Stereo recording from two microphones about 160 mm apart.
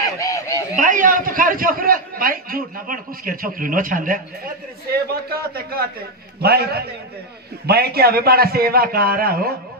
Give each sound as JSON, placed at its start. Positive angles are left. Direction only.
{"t": 0.0, "sound": "honk", "side_deg": 20}
{"t": 0.7, "sound": "a man's voice", "side_deg": -55}
{"t": 4.9, "sound": "a man's voice", "side_deg": -75}